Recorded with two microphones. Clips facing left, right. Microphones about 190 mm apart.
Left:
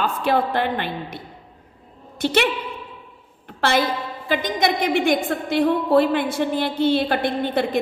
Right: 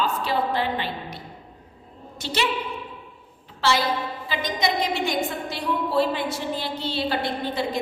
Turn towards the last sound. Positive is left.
turn(degrees=55)  # may be behind; listen again after turning